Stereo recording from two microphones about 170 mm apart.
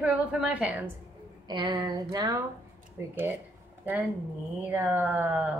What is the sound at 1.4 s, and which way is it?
Speech, 25° right (ahead or behind).